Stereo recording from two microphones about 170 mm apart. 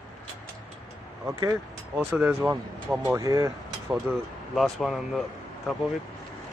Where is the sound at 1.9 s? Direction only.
5° right (ahead or behind).